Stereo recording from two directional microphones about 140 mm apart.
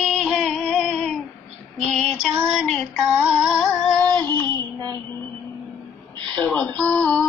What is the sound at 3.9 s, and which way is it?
Female singing, 20° left (ahead or behind).